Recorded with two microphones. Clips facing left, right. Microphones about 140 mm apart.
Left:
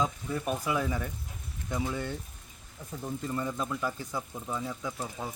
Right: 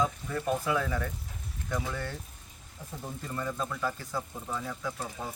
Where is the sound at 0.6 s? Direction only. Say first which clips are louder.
Even; 15° left (ahead or behind).